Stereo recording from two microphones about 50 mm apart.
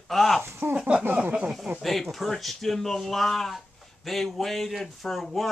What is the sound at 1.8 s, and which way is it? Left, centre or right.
Speech, centre.